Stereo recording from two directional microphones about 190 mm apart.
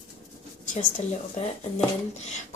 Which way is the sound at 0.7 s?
35° left (ahead or behind).